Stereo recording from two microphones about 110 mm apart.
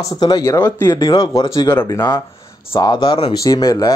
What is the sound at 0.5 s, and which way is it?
Speech, 20° left (ahead or behind).